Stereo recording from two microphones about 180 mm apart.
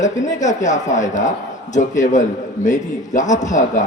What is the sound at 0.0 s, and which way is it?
A man's voice, 45° left (ahead or behind).